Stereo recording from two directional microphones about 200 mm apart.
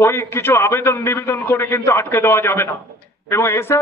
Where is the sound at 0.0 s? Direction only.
10° left (ahead or behind).